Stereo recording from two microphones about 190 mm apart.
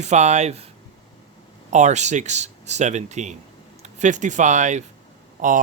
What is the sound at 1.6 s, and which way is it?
Speech, 40° right (ahead or behind).